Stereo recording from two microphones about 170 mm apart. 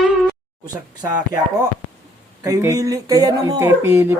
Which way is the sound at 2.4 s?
20° right (ahead or behind).